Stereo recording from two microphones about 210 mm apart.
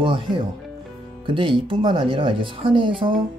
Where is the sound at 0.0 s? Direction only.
20° right (ahead or behind).